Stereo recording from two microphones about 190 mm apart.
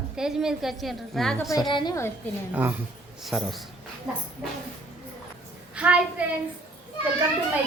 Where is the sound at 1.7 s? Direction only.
25° left (ahead or behind).